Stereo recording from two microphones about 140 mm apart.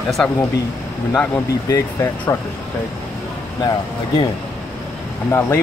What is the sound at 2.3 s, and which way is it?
Speech, 25° left (ahead or behind).